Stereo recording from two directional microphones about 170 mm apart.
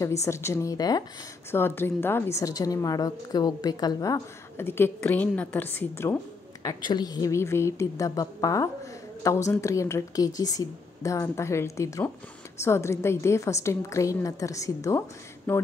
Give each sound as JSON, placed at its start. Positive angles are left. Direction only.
{"t": 0.0, "sound": "a woman's voice", "side_deg": 15}